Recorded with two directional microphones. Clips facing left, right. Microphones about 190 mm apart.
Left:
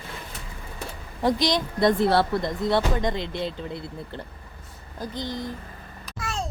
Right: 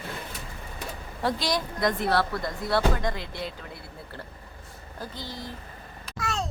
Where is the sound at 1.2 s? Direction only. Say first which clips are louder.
Left 5 dB; 15° left (ahead or behind).